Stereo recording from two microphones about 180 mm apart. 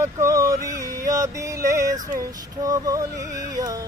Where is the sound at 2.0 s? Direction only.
20° right (ahead or behind).